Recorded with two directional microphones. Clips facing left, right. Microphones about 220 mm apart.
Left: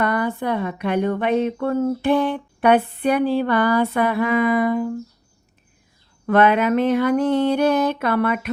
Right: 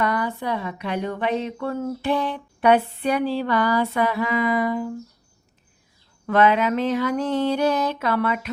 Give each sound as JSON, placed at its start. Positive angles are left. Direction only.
{"t": 0.0, "sound": "speech", "side_deg": 55}
{"t": 6.2, "sound": "speech", "side_deg": 55}